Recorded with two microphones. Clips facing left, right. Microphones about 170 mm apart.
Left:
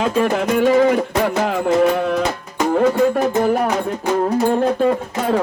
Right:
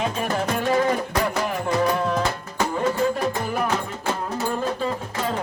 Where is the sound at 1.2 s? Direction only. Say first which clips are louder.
Left 6 dB; 75° left (ahead or behind).